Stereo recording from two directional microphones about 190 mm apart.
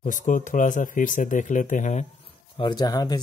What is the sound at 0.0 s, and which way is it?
Speech, 45° left (ahead or behind).